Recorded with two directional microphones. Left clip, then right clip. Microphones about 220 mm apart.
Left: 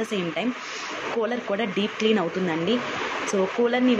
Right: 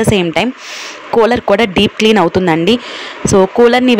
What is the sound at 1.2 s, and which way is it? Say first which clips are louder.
Speech: right 18 dB; 50° right (ahead or behind).